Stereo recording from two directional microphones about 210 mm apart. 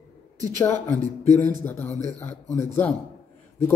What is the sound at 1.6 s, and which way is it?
A man's voice, 10° left (ahead or behind).